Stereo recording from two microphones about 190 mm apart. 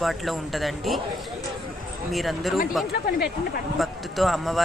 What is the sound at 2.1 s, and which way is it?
Speech, centre (ahead or behind).